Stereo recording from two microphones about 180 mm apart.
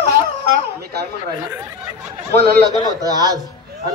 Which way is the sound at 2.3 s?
65° right (ahead or behind).